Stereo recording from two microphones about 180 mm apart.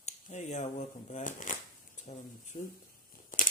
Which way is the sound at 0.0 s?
40° left (ahead or behind).